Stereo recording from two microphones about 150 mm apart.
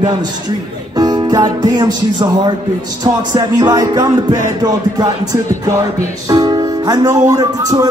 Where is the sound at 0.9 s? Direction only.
25° right (ahead or behind).